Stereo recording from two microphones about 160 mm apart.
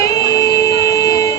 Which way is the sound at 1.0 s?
20° left (ahead or behind).